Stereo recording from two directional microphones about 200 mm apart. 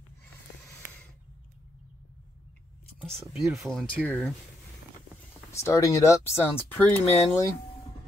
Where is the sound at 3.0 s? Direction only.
Centre (ahead or behind).